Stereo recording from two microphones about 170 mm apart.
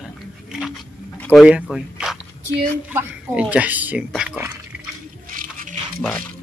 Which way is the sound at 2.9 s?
5° right (ahead or behind).